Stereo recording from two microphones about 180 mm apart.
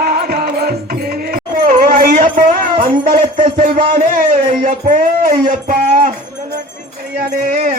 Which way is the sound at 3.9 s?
45° right (ahead or behind).